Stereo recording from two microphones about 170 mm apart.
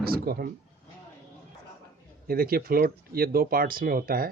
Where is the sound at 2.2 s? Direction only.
60° right (ahead or behind).